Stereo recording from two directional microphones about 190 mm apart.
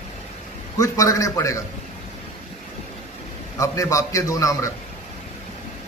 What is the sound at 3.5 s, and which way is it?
A man's voice, 15° left (ahead or behind).